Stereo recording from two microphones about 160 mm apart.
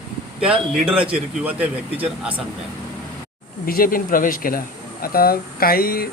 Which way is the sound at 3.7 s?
65° left (ahead or behind).